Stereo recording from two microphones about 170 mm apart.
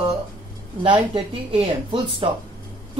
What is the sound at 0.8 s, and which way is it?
Speech, 30° right (ahead or behind).